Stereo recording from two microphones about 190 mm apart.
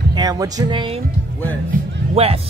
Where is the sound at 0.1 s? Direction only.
20° right (ahead or behind).